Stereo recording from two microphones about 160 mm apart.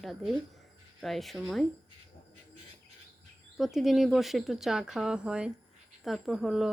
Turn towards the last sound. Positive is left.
turn(degrees=-5)  # may be behind; listen again after turning